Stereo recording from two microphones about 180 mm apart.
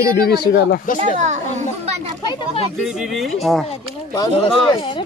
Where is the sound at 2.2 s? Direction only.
25° left (ahead or behind).